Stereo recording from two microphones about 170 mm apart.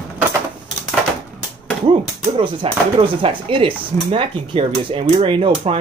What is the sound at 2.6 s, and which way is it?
Speech, 35° right (ahead or behind).